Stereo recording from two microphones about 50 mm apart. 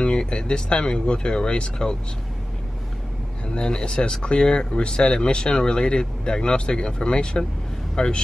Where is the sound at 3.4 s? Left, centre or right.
Centre.